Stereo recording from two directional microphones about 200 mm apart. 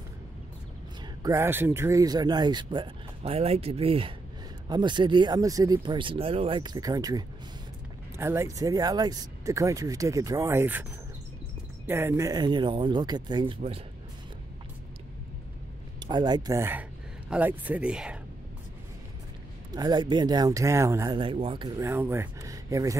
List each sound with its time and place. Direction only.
1.2 s speech: 15° right (ahead or behind)
16.0 s speech: 20° right (ahead or behind); by 18.1 s 5° right (ahead or behind)
19.7 s speech: 20° right (ahead or behind)